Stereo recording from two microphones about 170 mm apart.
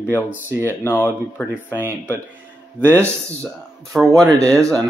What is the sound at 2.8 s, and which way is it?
Speech, 5° left (ahead or behind).